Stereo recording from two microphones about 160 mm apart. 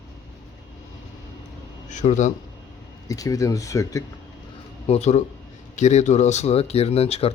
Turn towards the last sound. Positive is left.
turn(degrees=40)  # may be behind; listen again after turning